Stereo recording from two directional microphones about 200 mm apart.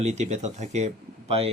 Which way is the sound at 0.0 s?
35° right (ahead or behind).